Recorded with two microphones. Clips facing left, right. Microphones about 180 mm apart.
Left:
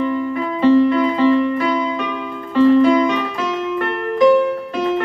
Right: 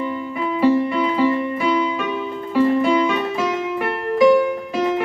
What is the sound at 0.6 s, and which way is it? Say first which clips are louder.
Music: left 5 dB; 10° right (ahead or behind).